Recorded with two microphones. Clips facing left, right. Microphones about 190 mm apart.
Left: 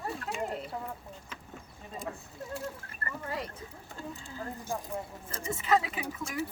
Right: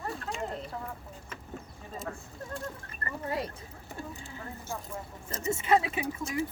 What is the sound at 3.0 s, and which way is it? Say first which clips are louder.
Speech: right 3 dB; 25° right (ahead or behind).